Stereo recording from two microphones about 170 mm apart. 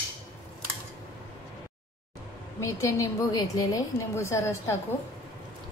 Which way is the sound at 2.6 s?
20° left (ahead or behind).